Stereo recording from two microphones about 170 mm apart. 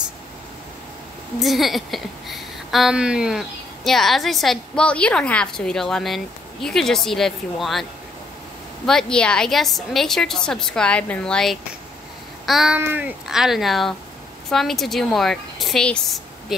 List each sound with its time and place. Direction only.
1.4 s speech: centre (ahead or behind)
8.8 s speech: 5° left (ahead or behind)